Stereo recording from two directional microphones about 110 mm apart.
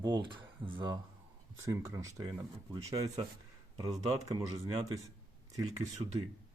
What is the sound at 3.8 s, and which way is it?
Speech, 35° right (ahead or behind).